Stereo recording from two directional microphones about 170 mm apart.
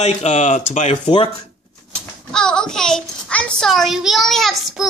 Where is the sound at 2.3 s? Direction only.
5° left (ahead or behind).